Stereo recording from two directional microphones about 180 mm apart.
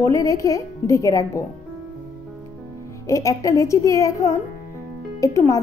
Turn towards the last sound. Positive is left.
turn(degrees=15)  # may be behind; listen again after turning